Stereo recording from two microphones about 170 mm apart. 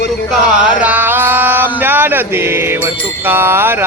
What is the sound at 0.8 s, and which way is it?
Mantra, 10° right (ahead or behind).